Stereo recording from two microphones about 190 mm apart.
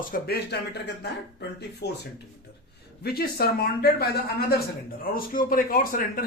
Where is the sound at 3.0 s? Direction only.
55° left (ahead or behind).